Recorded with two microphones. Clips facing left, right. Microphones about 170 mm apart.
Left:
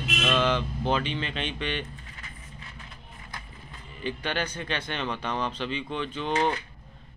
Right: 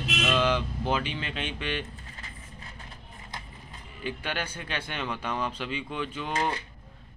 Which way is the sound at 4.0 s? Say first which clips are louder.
Left 3 dB; 5° right (ahead or behind).